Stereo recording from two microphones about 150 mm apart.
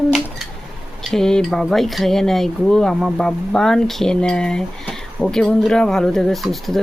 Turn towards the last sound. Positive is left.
turn(degrees=0)  # may be behind; listen again after turning